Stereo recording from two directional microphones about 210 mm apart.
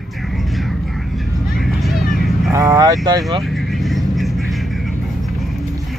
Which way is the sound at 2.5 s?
15° right (ahead or behind).